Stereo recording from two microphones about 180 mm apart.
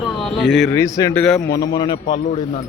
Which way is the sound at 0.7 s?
15° left (ahead or behind).